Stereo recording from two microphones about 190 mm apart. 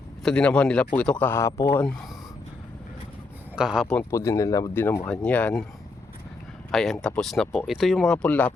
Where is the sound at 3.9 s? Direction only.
10° left (ahead or behind).